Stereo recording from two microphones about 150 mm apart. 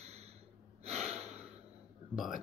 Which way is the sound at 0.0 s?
45° right (ahead or behind).